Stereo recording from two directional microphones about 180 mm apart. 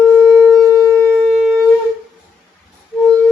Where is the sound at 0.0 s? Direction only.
10° right (ahead or behind).